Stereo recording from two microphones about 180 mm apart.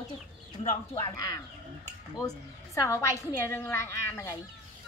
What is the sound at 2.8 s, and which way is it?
A woman's voice, 15° left (ahead or behind).